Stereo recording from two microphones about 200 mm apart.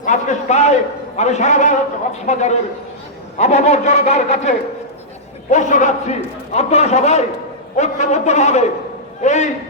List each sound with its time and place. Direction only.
0.0 s a man's voice: 35° left (ahead or behind)